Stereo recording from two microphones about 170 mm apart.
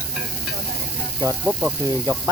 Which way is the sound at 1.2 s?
10° right (ahead or behind).